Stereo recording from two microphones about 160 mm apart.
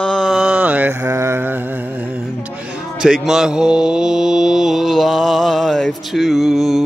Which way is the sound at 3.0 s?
5° right (ahead or behind).